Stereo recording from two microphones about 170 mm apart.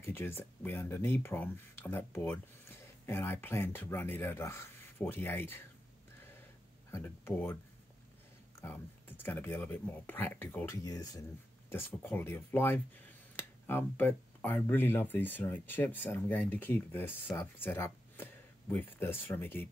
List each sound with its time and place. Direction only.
0.0 s speech: 15° left (ahead or behind)
6.9 s speech: 15° left (ahead or behind)
8.5 s speech: 10° left (ahead or behind)